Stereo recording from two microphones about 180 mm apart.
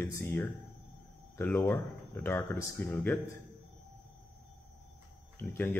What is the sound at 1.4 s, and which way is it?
Speech, 5° left (ahead or behind).